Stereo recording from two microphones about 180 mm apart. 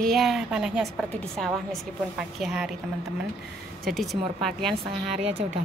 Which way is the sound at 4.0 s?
Centre (ahead or behind).